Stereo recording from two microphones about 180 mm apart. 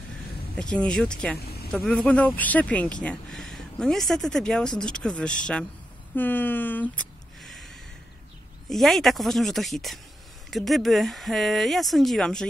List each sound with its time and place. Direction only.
0.6 s speech: 5° left (ahead or behind)
6.1 s a sound: 10° left (ahead or behind)
8.6 s speech: centre (ahead or behind)